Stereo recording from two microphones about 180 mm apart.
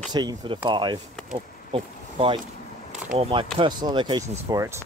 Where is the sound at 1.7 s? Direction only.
25° right (ahead or behind).